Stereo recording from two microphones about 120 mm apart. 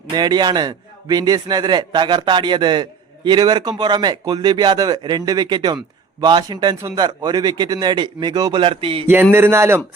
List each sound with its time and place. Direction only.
0.1 s speech: 35° right (ahead or behind)
9.3 s speech: 20° right (ahead or behind)